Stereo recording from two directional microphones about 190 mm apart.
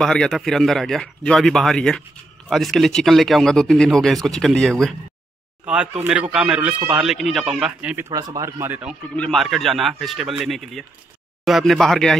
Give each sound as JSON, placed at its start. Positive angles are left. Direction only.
{"t": 0.0, "sound": "speech", "side_deg": 5}
{"t": 8.1, "sound": "speech", "side_deg": -20}
{"t": 9.1, "sound": "speech", "side_deg": 5}